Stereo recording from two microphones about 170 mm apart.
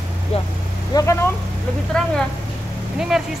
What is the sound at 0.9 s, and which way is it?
Speech, 20° left (ahead or behind).